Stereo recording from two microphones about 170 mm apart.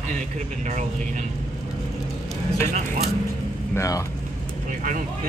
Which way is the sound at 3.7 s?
20° left (ahead or behind).